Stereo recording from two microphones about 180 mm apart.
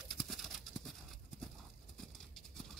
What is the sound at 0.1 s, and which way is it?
Clip-clop, centre (ahead or behind).